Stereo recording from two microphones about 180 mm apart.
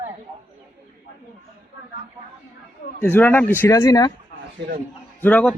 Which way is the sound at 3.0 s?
10° left (ahead or behind).